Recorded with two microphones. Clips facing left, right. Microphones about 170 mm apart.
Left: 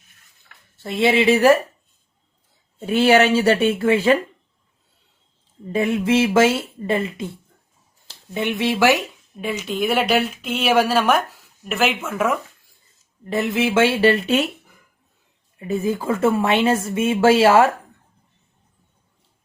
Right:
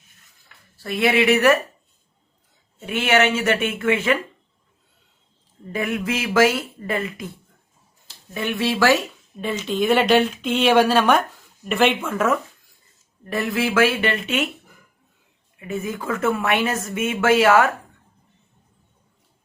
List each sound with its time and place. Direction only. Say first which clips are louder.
0.8 s speech: left 1 dB; 25° left (ahead or behind)
2.7 s a woman's voice: left 5 dB; 35° left (ahead or behind)
5.7 s speech: left 6 dB; 25° left (ahead or behind)
8.3 s speech: left 2 dB; 20° left (ahead or behind)
13.2 s speech: left 2 dB; 20° left (ahead or behind); by 14.5 s 35° left (ahead or behind)
15.5 s speech: left 5 dB; 35° left (ahead or behind)